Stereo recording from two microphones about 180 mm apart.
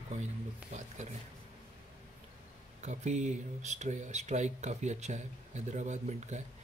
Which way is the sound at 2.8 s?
40° right (ahead or behind).